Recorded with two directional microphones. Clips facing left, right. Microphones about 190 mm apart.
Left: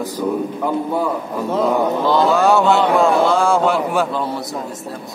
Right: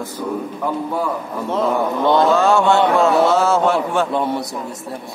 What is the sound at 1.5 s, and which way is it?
Speech, 15° left (ahead or behind).